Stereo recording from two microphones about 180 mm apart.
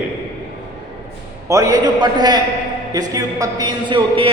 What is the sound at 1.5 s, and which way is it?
A man's voice, 20° right (ahead or behind).